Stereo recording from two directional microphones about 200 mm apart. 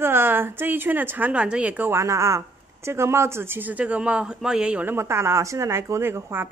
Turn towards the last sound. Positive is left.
turn(degrees=-10)  # may be behind; listen again after turning